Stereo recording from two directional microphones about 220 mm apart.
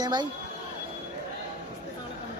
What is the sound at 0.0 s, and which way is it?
Speech, 20° right (ahead or behind).